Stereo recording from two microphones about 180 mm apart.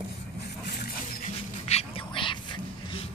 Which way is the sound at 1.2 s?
35° left (ahead or behind).